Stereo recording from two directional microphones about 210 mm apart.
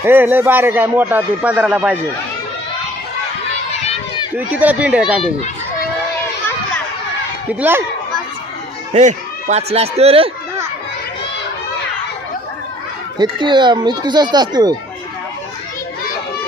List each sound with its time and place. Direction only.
0.0 s a man's voice: 10° right (ahead or behind)
4.4 s a man's voice: 5° right (ahead or behind)
7.6 s a man's voice: 10° right (ahead or behind)
8.9 s speech: 35° right (ahead or behind)
13.4 s speech: 20° right (ahead or behind)